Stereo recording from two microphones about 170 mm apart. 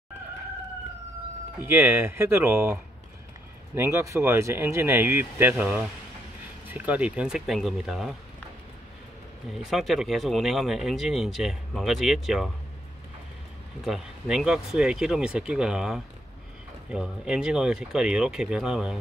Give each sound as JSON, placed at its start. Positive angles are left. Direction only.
{"t": 1.6, "sound": "speech", "side_deg": -10}
{"t": 9.5, "sound": "speech", "side_deg": 0}
{"t": 13.8, "sound": "speech", "side_deg": 0}